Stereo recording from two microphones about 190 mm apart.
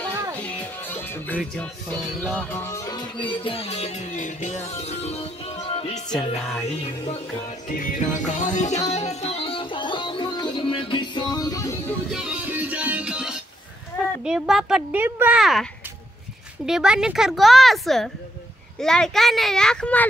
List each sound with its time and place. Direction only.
0.1 s music: 15° right (ahead or behind)
0.4 s music: 10° left (ahead or behind); by 6.1 s 30° left (ahead or behind)
6.1 s speech: 5° left (ahead or behind)
7.6 s music: 45° left (ahead or behind); by 11.7 s 20° left (ahead or behind)
12.1 s music: 5° right (ahead or behind)
13.9 s speech: 5° right (ahead or behind)
16.6 s speech: 5° right (ahead or behind)